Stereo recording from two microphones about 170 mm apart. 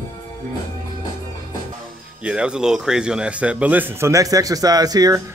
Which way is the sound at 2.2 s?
5° right (ahead or behind).